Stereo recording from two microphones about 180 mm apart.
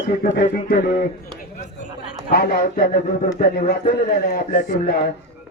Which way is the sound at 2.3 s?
55° left (ahead or behind).